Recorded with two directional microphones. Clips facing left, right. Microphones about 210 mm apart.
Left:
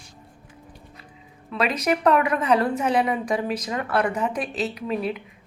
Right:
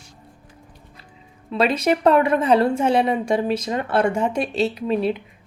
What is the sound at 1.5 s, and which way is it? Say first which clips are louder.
Speech: right 4 dB; 30° right (ahead or behind).